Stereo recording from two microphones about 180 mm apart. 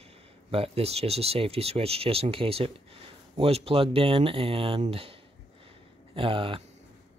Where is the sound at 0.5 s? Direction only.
35° right (ahead or behind).